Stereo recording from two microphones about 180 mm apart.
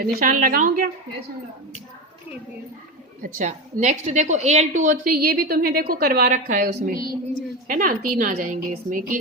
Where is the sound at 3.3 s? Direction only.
40° right (ahead or behind).